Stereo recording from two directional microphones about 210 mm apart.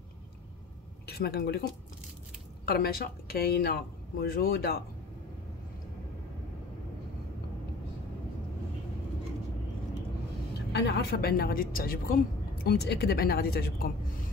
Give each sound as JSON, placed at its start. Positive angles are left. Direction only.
{"t": 1.0, "sound": "a woman's voice", "side_deg": 50}
{"t": 10.7, "sound": "a woman's voice", "side_deg": 50}